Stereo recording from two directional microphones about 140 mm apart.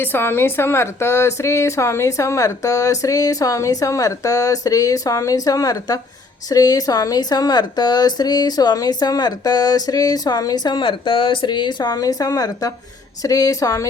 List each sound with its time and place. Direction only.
0.0 s a woman's voice: 15° left (ahead or behind)